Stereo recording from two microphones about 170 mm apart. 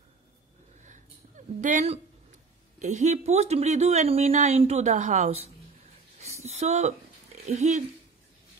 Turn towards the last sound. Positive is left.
turn(degrees=-45)  # may be behind; listen again after turning